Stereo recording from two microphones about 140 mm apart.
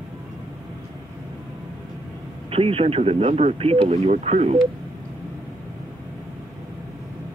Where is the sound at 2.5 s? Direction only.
45° right (ahead or behind).